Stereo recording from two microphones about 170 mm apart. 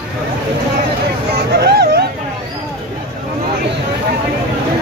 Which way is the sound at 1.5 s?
70° right (ahead or behind).